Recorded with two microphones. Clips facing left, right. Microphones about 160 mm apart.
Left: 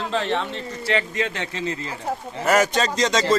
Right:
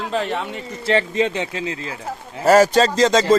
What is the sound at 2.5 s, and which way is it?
Speech, 30° right (ahead or behind).